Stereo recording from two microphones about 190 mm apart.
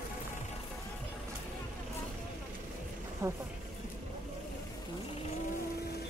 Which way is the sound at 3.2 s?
15° right (ahead or behind).